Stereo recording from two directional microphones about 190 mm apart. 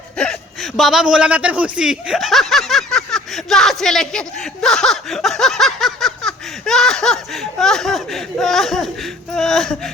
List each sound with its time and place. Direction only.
0.2 s a man's voice: centre (ahead or behind)